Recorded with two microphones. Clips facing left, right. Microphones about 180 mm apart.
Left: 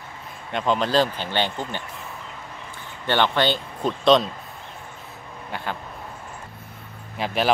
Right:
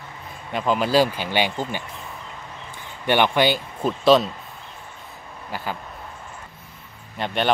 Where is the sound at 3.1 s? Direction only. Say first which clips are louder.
Right 2 dB; 10° right (ahead or behind).